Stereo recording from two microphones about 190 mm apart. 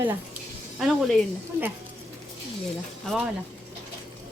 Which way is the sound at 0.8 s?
Centre (ahead or behind).